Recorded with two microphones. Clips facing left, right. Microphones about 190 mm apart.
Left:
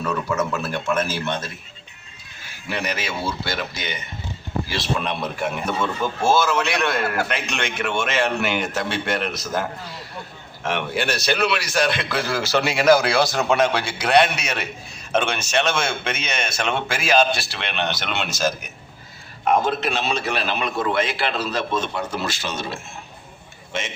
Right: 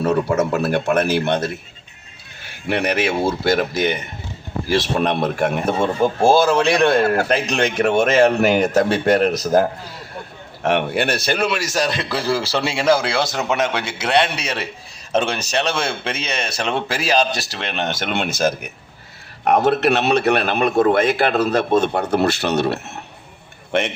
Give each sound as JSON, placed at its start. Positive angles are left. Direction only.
{"t": 0.0, "sound": "a man's voice", "side_deg": -35}
{"t": 0.9, "sound": "a man's voice", "side_deg": -65}
{"t": 2.6, "sound": "a man's voice", "side_deg": -60}
{"t": 5.6, "sound": "a man's voice", "side_deg": -30}
{"t": 10.6, "sound": "a man's voice", "side_deg": -60}
{"t": 19.5, "sound": "a man's voice", "side_deg": -70}